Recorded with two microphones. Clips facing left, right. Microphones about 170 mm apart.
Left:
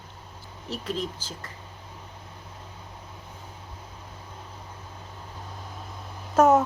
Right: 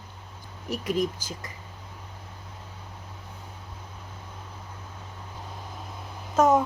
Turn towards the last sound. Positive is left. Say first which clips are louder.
# left 2 dB
turn(degrees=10)  # may be behind; listen again after turning